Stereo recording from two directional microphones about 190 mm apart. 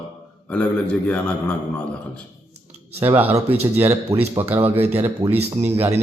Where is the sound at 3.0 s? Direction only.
10° right (ahead or behind).